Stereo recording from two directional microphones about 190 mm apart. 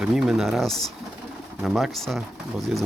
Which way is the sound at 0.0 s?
5° right (ahead or behind).